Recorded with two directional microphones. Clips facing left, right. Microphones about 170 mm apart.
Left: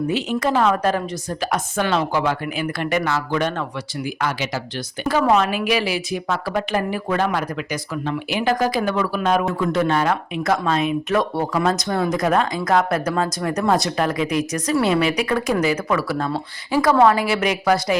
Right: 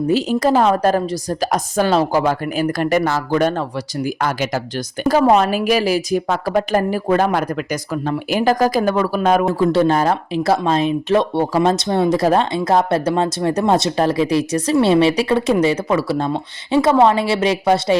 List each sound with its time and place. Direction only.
0.1 s a woman's voice: 35° right (ahead or behind)
9.6 s speech: 30° right (ahead or behind)